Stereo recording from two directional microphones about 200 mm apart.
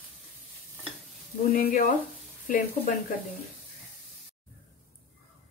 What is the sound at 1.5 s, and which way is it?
Speech, 45° left (ahead or behind).